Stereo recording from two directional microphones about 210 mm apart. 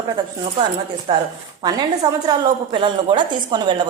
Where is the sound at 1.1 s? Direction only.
25° right (ahead or behind).